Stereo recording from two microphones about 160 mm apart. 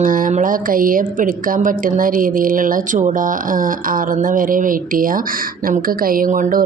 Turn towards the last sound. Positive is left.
turn(degrees=-55)  # may be behind; listen again after turning